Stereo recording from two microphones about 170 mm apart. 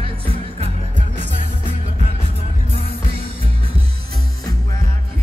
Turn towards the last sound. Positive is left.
turn(degrees=-35)  # may be behind; listen again after turning